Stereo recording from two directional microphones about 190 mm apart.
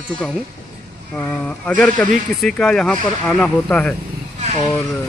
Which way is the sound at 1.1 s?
5° left (ahead or behind).